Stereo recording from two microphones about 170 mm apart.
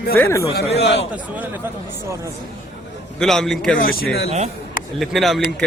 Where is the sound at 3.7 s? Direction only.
60° left (ahead or behind).